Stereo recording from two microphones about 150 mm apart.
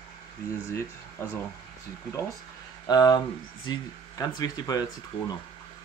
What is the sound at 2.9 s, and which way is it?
Speech, 25° left (ahead or behind).